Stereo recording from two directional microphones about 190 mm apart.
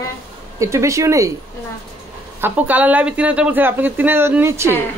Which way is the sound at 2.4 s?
10° right (ahead or behind).